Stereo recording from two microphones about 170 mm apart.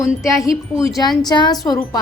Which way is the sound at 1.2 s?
25° left (ahead or behind).